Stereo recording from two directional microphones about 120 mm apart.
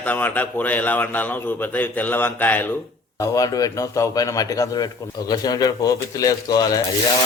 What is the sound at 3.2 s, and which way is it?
A man's voice, 30° left (ahead or behind).